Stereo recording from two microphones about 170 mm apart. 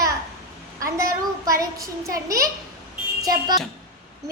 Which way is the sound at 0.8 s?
20° right (ahead or behind).